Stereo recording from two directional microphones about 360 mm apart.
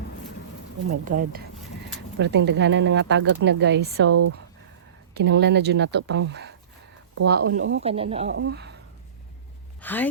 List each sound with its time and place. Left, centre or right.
1.0 s speech: right
4.1 s speech: right
5.1 s speech: right
7.9 s speech: centre
8.3 s speech: right
9.8 s speech: centre